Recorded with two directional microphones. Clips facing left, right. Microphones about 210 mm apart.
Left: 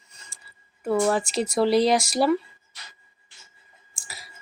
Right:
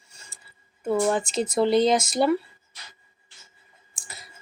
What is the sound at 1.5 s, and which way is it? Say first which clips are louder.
Speech: even; centre (ahead or behind).